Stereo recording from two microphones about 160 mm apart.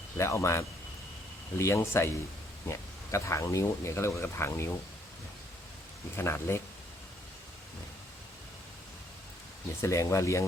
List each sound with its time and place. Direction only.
0.2 s speech: 20° left (ahead or behind)
6.1 s speech: 15° left (ahead or behind)
9.8 s speech: 20° left (ahead or behind)